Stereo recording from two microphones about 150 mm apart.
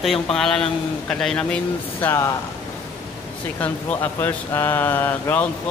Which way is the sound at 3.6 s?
10° left (ahead or behind).